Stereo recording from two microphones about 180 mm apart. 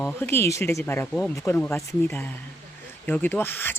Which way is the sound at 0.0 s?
10° left (ahead or behind).